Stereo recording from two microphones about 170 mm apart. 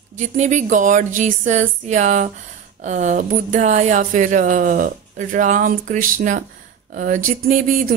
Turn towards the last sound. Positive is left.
turn(degrees=-50)  # may be behind; listen again after turning